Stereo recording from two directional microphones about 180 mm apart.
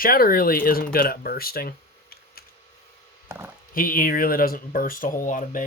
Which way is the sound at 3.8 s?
50° left (ahead or behind).